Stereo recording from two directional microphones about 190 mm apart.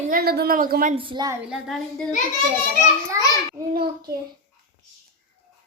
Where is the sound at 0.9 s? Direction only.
25° right (ahead or behind).